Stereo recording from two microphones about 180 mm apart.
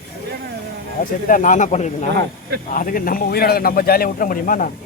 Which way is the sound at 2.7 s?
50° left (ahead or behind).